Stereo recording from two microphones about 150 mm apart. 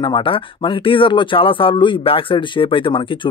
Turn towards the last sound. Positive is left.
turn(degrees=35)  # may be behind; listen again after turning